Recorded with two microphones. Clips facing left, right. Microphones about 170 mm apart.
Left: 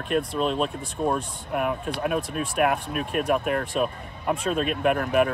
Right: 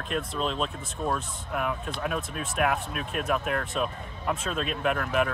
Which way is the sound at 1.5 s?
50° left (ahead or behind).